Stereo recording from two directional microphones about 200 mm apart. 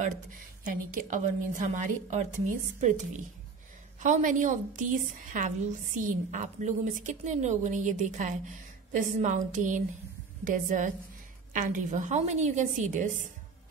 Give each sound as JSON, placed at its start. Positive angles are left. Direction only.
{"t": 0.7, "sound": "a woman's voice", "side_deg": -40}